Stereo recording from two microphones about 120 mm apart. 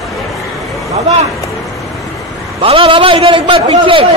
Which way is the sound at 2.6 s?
50° right (ahead or behind).